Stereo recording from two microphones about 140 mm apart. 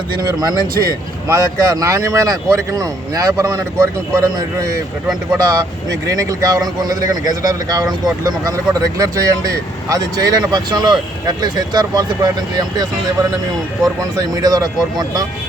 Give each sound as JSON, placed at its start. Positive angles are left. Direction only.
{"t": 0.2, "sound": "speech", "side_deg": -25}
{"t": 14.2, "sound": "speech", "side_deg": -25}